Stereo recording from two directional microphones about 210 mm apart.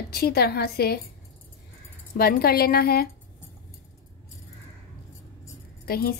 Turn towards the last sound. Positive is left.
turn(degrees=45)  # may be behind; listen again after turning